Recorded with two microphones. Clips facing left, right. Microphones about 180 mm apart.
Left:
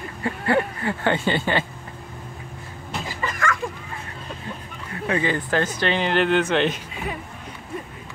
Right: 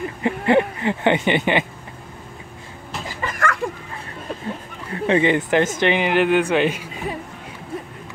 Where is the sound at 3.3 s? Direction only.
55° right (ahead or behind).